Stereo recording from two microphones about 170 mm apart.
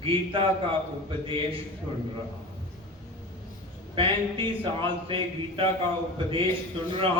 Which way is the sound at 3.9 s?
30° right (ahead or behind).